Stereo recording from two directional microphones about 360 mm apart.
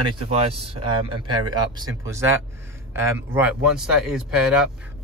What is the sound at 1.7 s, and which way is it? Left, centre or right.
Speech, centre.